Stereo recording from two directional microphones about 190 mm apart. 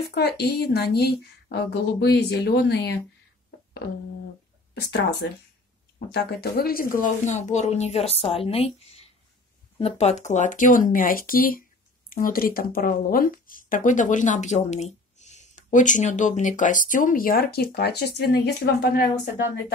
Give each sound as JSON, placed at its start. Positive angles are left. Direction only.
{"t": 0.0, "sound": "speech", "side_deg": 60}
{"t": 5.9, "sound": "speech", "side_deg": 55}